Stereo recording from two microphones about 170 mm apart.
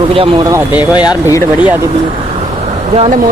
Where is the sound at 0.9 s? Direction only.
25° left (ahead or behind).